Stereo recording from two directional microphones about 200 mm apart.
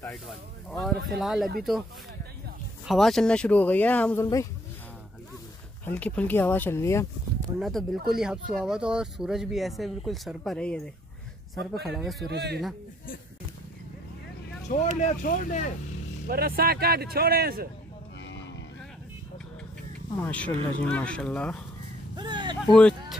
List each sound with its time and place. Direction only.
0.7 s speech: centre (ahead or behind)
2.9 s speech: centre (ahead or behind)
5.9 s speech: 5° left (ahead or behind)
7.5 s speech: centre (ahead or behind)
11.8 s speech: centre (ahead or behind)
12.3 s speech: 55° right (ahead or behind)
15.0 s speech: 40° left (ahead or behind)
16.3 s speech: 50° right (ahead or behind)
18.2 s a sound: 65° left (ahead or behind)
20.2 s speech: 5° left (ahead or behind)
22.1 s a sound: 20° right (ahead or behind)
22.7 s speech: 5° left (ahead or behind)